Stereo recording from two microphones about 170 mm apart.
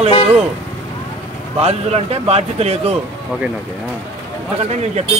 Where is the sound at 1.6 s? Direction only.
35° right (ahead or behind).